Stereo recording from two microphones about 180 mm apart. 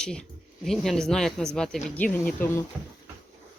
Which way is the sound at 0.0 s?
5° left (ahead or behind).